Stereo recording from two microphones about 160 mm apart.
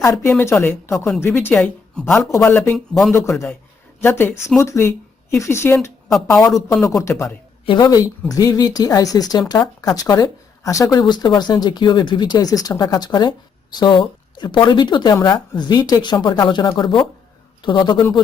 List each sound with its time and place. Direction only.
0.0 s a woman's voice: 20° left (ahead or behind)
2.7 s speech: centre (ahead or behind)
3.1 s a woman's voice: 15° left (ahead or behind)
7.6 s speech: 30° left (ahead or behind)